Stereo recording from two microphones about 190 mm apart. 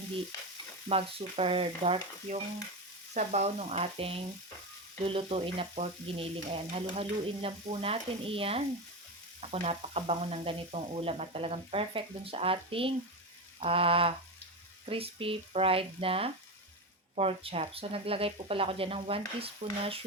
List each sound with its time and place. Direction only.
0.9 s speech: 30° right (ahead or behind)
5.0 s frying: 30° right (ahead or behind)
9.4 s speech: 30° right (ahead or behind)
13.6 s frying: 30° right (ahead or behind)